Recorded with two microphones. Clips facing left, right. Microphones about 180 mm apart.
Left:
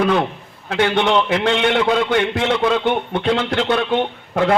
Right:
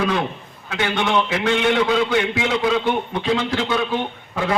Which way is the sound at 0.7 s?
60° left (ahead or behind).